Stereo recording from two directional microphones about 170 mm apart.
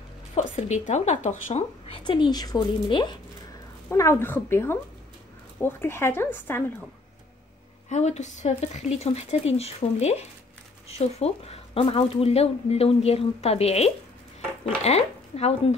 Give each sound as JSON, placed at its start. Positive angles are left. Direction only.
{"t": 0.3, "sound": "speech", "side_deg": 45}
{"t": 2.0, "sound": "speech", "side_deg": 25}
{"t": 3.9, "sound": "speech", "side_deg": 15}
{"t": 7.9, "sound": "speech", "side_deg": 40}